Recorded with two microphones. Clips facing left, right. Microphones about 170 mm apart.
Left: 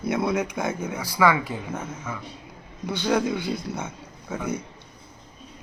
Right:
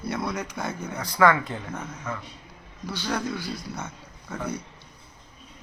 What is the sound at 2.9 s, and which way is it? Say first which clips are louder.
Speech: left 6 dB; 20° left (ahead or behind).